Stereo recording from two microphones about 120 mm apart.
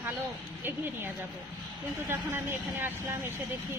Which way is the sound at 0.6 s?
15° right (ahead or behind).